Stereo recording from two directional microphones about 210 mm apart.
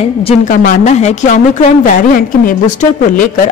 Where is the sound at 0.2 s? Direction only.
35° left (ahead or behind).